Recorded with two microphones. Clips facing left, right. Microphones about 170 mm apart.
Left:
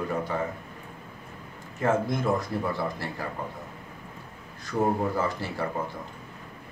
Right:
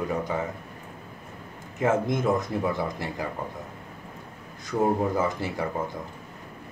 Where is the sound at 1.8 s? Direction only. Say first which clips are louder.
Right 2 dB; 20° right (ahead or behind).